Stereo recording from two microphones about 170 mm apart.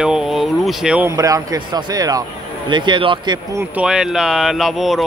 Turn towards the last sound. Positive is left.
turn(degrees=0)  # may be behind; listen again after turning